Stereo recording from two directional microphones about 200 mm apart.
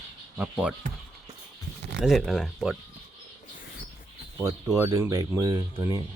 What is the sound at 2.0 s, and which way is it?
Speech, centre (ahead or behind).